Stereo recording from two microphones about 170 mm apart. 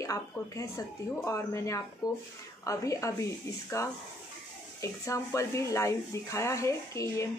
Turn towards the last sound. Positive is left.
turn(degrees=20)  # may be behind; listen again after turning